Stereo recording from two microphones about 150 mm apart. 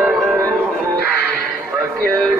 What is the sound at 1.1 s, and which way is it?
Music, 10° left (ahead or behind).